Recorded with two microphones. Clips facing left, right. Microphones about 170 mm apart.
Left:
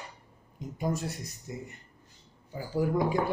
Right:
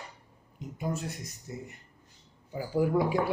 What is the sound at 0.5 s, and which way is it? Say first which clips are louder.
Speech: left 2 dB; 40° left (ahead or behind).